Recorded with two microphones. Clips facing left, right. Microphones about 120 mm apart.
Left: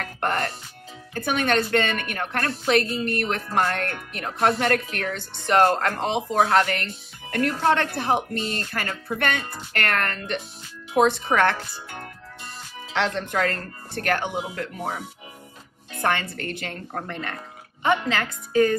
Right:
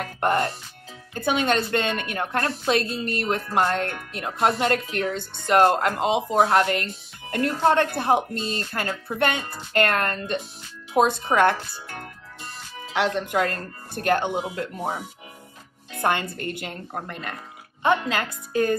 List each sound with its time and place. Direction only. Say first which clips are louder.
0.0 s speech: right 3 dB; 20° right (ahead or behind)
6.4 s speech: left 2 dB; 25° right (ahead or behind)
12.9 s speech: right 2 dB; 10° right (ahead or behind)
16.0 s a woman's voice: right 1 dB; 20° right (ahead or behind)